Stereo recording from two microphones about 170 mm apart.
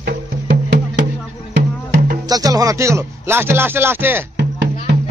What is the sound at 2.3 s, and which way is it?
Speech, 20° right (ahead or behind).